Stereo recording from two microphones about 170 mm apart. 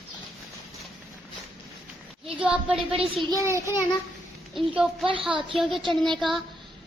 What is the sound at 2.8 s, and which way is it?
Speech, 30° right (ahead or behind).